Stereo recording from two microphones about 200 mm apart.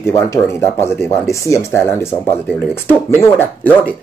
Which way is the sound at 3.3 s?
10° left (ahead or behind).